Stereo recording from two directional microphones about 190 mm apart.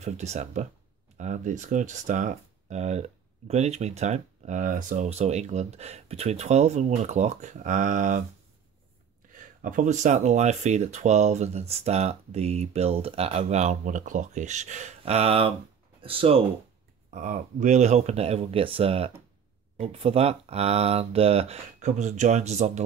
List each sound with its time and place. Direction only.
0.0 s speech: 35° right (ahead or behind)
9.6 s speech: 40° right (ahead or behind)
17.1 s speech: 40° right (ahead or behind)